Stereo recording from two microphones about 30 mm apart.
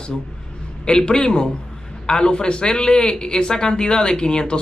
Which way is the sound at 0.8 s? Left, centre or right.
Left.